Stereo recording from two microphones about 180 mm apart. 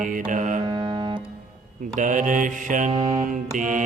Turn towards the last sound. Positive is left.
turn(degrees=-45)  # may be behind; listen again after turning